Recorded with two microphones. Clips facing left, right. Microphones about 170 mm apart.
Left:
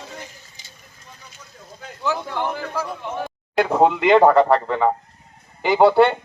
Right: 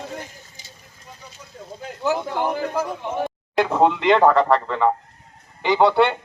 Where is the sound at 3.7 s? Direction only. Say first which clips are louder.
Left 2 dB; 5° left (ahead or behind).